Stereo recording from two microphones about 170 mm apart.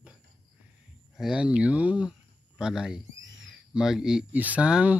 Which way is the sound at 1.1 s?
Centre (ahead or behind).